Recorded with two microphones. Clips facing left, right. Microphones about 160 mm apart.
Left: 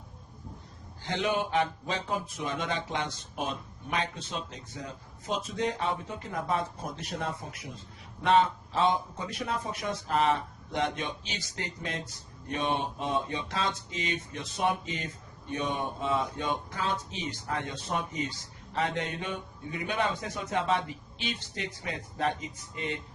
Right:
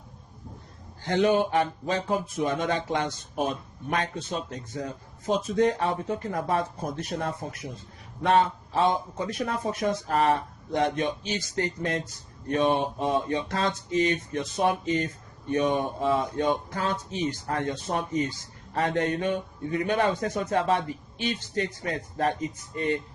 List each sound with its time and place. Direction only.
1.0 s speech: 45° right (ahead or behind)
8.7 s speech: 45° right (ahead or behind)
13.3 s speech: 50° right (ahead or behind)